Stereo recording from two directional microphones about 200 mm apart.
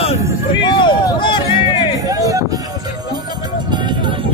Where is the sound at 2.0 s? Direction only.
15° right (ahead or behind).